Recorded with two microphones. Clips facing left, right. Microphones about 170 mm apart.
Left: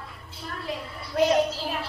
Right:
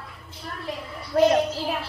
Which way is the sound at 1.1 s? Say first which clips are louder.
Right 4 dB; 40° right (ahead or behind).